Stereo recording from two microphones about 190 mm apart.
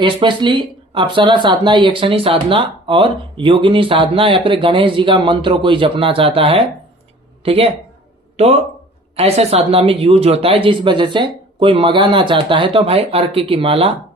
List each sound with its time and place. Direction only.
0.0 s speech: 25° right (ahead or behind)
9.1 s speech: 30° right (ahead or behind)